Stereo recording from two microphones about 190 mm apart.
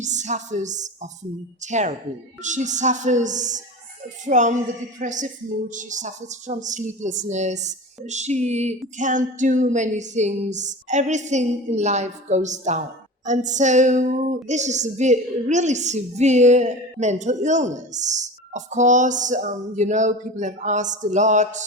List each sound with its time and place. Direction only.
0.0 s a woman's voice: 40° right (ahead or behind)